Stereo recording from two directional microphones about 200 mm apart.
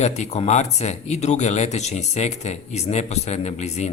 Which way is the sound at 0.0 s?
35° left (ahead or behind).